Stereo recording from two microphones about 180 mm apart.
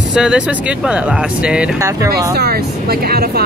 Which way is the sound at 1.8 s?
20° right (ahead or behind).